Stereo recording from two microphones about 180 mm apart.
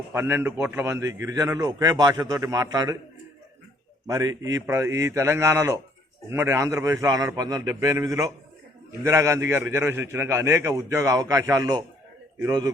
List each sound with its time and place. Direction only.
0.1 s a man's voice: 10° right (ahead or behind)
4.0 s a man's voice: 20° right (ahead or behind)